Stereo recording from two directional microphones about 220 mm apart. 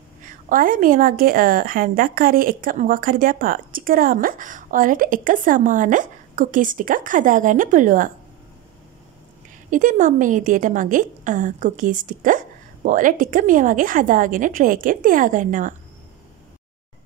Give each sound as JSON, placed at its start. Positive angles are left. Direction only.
{"t": 0.2, "sound": "a woman's voice", "side_deg": -40}
{"t": 9.7, "sound": "a woman's voice", "side_deg": -35}